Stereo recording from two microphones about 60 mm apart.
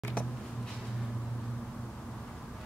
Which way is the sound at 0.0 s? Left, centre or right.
Left.